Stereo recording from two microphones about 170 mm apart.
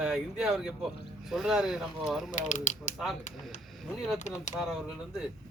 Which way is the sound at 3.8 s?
Centre (ahead or behind).